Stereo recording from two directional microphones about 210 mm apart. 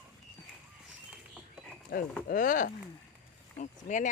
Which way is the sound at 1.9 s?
45° left (ahead or behind).